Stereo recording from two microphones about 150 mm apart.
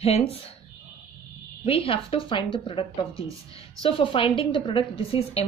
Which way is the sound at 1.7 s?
40° left (ahead or behind).